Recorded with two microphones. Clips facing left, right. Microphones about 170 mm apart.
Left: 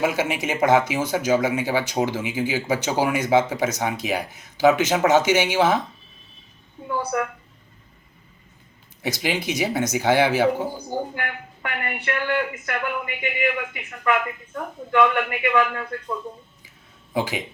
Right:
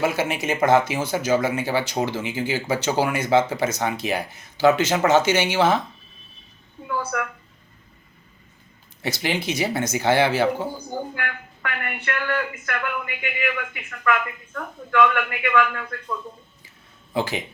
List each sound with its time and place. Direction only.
0.0 s speech: 15° left (ahead or behind)
7.1 s speech: 20° left (ahead or behind)
9.0 s speech: 15° left (ahead or behind)
17.2 s speech: 15° left (ahead or behind)